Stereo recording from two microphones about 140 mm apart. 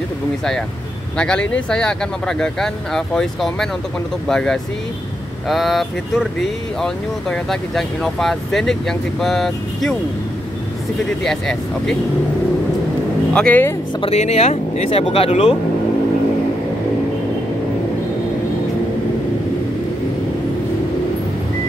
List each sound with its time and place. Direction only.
1.1 s speech: 5° left (ahead or behind)
11.2 s speech: 5° left (ahead or behind)
13.3 s speech: 10° left (ahead or behind)
14.0 s speech: 50° left (ahead or behind)